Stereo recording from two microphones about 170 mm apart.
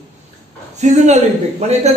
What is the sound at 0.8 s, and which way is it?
A man's voice, 40° right (ahead or behind).